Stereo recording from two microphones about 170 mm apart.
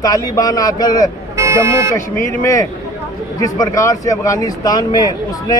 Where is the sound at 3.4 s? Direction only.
20° left (ahead or behind).